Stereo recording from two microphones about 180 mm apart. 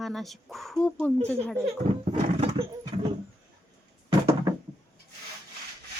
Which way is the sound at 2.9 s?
30° right (ahead or behind).